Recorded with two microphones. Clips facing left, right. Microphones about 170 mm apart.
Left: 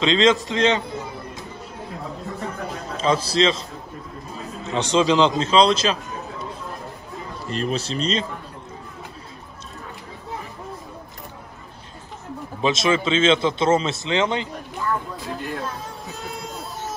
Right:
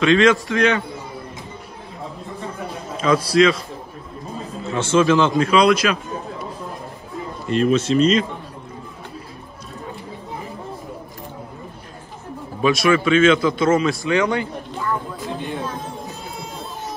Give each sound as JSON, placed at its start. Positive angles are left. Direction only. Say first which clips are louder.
{"t": 0.0, "sound": "a man's voice", "louder": "right 3 dB", "side_deg": 20}
{"t": 3.0, "sound": "a man's voice", "louder": "right 4 dB", "side_deg": 30}
{"t": 4.6, "sound": "a man's voice", "louder": "right 2 dB", "side_deg": 15}
{"t": 7.4, "sound": "speech", "louder": "right 8 dB", "side_deg": 35}
{"t": 12.6, "sound": "a man's voice", "louder": "right 4 dB", "side_deg": 25}